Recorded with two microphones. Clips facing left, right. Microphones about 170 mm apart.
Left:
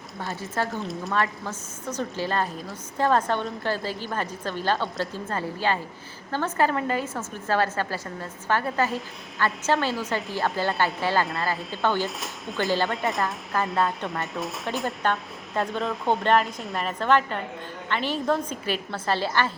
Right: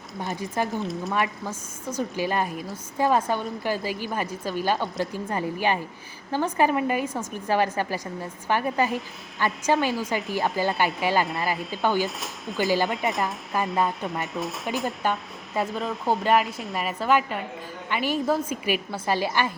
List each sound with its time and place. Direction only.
0.2 s a woman's voice: 15° right (ahead or behind)
0.8 s speech: centre (ahead or behind)
1.1 s a woman's voice: 15° right (ahead or behind)
11.5 s speech: centre (ahead or behind)